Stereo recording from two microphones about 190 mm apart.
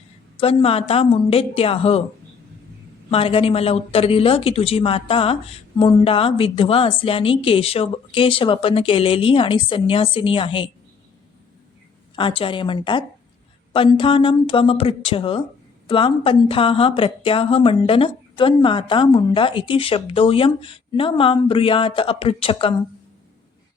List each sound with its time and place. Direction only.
0.3 s a woman's voice: 30° left (ahead or behind)
3.1 s speech: 30° left (ahead or behind)
12.1 s speech: 30° left (ahead or behind)